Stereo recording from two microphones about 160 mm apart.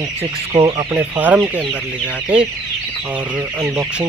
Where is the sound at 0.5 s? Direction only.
30° right (ahead or behind).